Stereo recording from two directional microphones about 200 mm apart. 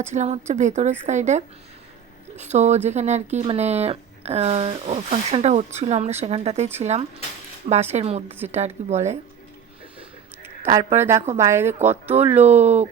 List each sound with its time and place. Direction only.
0.0 s speech: 35° right (ahead or behind)
11.3 s speech: 15° right (ahead or behind)
12.4 s speech: 35° right (ahead or behind)